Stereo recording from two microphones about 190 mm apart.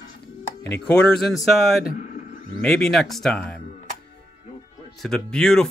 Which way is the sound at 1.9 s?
45° left (ahead or behind).